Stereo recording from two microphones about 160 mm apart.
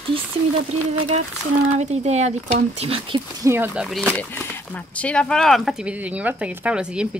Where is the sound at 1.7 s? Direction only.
45° right (ahead or behind).